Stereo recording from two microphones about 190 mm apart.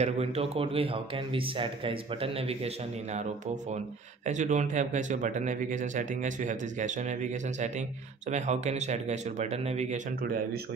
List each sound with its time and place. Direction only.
0.0 s speech: 35° right (ahead or behind)
4.3 s speech: 40° right (ahead or behind)
10.2 s speech: 50° right (ahead or behind)